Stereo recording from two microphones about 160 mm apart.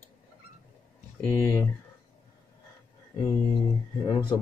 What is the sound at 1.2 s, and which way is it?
Speech, 15° left (ahead or behind).